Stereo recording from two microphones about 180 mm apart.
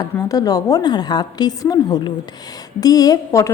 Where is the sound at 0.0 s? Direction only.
20° left (ahead or behind).